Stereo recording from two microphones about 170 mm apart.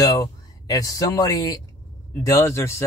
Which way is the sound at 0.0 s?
20° left (ahead or behind).